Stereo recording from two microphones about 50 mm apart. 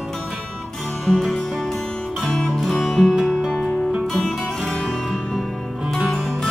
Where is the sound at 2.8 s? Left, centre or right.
Centre.